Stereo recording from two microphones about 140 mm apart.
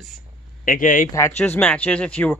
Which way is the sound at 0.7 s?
75° left (ahead or behind).